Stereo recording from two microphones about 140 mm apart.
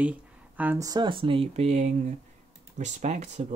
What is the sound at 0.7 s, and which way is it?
Speech, 25° right (ahead or behind).